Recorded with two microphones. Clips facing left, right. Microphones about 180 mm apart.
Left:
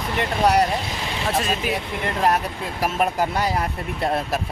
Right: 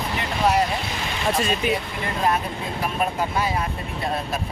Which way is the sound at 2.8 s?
70° left (ahead or behind).